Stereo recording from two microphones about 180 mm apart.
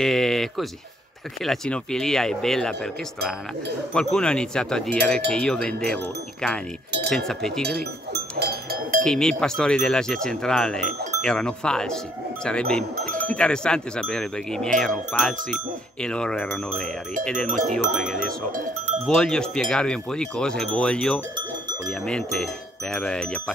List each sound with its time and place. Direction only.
0.0 s sheep: centre (ahead or behind)
1.4 s speech: centre (ahead or behind)
7.7 s speech: 60° right (ahead or behind)
9.0 s speech: 5° left (ahead or behind)
18.2 s speech: 45° right (ahead or behind)
19.0 s speech: 5° left (ahead or behind)